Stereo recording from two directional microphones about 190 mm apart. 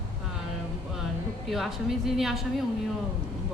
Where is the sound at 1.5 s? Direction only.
Centre (ahead or behind).